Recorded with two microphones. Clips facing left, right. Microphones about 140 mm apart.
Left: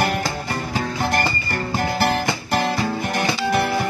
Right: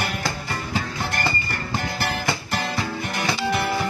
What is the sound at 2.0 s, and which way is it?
Music, 45° left (ahead or behind).